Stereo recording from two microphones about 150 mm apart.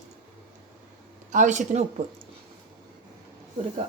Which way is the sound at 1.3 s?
55° right (ahead or behind).